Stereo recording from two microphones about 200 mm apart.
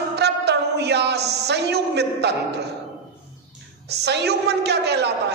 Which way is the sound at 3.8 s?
55° right (ahead or behind).